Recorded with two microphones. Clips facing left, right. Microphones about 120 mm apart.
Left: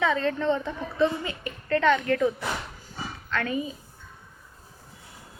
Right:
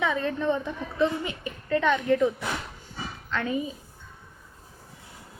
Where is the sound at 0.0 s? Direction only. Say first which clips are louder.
Left 2 dB; 10° right (ahead or behind).